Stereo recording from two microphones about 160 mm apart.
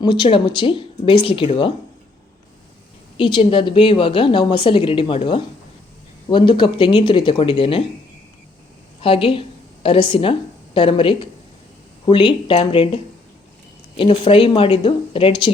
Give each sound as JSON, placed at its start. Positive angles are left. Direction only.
{"t": 0.0, "sound": "a woman's voice", "side_deg": 30}
{"t": 3.2, "sound": "a woman's voice", "side_deg": 30}
{"t": 9.0, "sound": "a woman's voice", "side_deg": 35}